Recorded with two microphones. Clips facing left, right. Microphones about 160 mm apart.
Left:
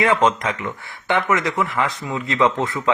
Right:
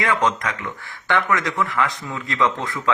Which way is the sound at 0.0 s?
20° left (ahead or behind).